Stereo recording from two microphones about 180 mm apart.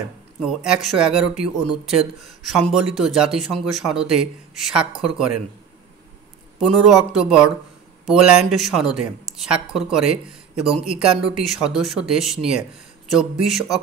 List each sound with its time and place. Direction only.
0.4 s speech: centre (ahead or behind)
6.6 s speech: centre (ahead or behind)